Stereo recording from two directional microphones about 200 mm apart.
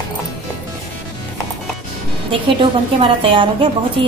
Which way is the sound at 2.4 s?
25° right (ahead or behind).